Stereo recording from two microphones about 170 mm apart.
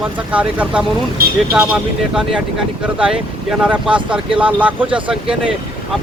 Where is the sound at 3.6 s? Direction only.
5° right (ahead or behind).